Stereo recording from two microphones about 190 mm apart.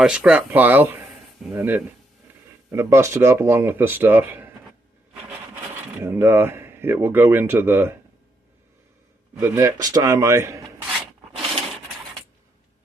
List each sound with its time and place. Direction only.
0.0 s speech: 5° right (ahead or behind)
6.1 s speech: 10° right (ahead or behind)
9.4 s speech: 15° right (ahead or behind)